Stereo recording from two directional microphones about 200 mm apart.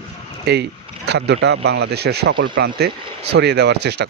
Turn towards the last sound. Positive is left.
turn(degrees=-55)  # may be behind; listen again after turning